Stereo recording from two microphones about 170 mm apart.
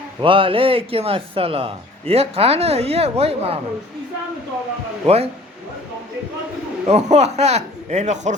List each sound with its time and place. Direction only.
0.2 s speech: 30° right (ahead or behind)
5.0 s speech: 35° right (ahead or behind)
6.8 s speech: 40° right (ahead or behind)